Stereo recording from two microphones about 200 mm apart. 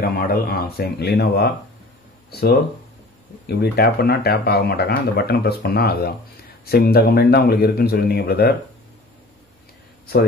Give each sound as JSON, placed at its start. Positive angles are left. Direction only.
{"t": 0.2, "sound": "speech", "side_deg": 50}
{"t": 3.4, "sound": "speech", "side_deg": 50}